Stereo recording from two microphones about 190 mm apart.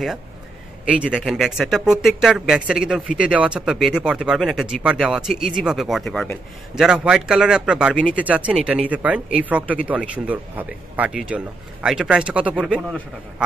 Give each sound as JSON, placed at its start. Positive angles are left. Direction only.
{"t": 0.8, "sound": "speech", "side_deg": -5}